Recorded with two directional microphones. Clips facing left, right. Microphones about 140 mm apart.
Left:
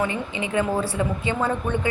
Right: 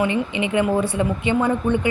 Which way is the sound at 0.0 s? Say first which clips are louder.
Right 5 dB; 20° right (ahead or behind).